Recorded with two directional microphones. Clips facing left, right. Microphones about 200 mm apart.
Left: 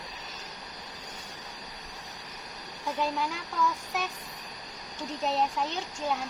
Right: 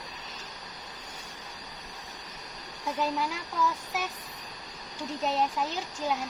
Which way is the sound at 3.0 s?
5° right (ahead or behind).